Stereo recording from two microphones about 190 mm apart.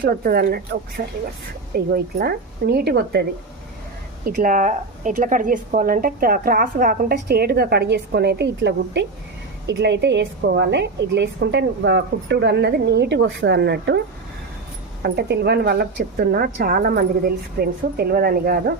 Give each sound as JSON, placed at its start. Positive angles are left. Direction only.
{"t": 0.0, "sound": "a woman's voice", "side_deg": -50}
{"t": 4.3, "sound": "a woman's voice", "side_deg": -45}
{"t": 15.0, "sound": "a woman's voice", "side_deg": -60}